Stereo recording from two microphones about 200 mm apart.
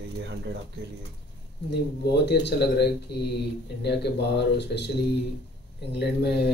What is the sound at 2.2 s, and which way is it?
Speech, 60° left (ahead or behind).